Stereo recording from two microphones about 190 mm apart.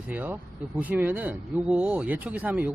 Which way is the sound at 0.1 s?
10° right (ahead or behind).